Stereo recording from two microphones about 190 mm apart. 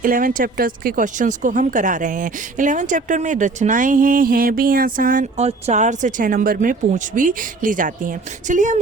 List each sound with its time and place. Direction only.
0.0 s speech: 45° right (ahead or behind)